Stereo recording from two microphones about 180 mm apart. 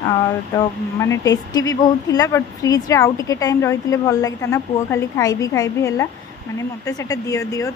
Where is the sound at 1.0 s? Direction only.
20° left (ahead or behind).